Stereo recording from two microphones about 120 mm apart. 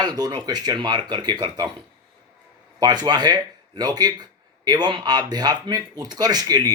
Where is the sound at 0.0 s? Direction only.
35° right (ahead or behind).